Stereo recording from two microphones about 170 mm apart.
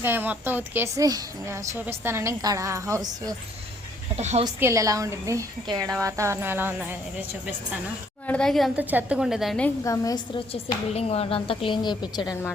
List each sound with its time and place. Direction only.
0.0 s a woman's voice: 10° right (ahead or behind)
4.1 s a woman's voice: 40° right (ahead or behind)
4.4 s a woman's voice: 20° right (ahead or behind)
8.3 s a woman's voice: 5° left (ahead or behind)
8.8 s a woman's voice: 10° right (ahead or behind)
9.8 s a woman's voice: 20° left (ahead or behind)
10.5 s a woman's voice: 35° left (ahead or behind)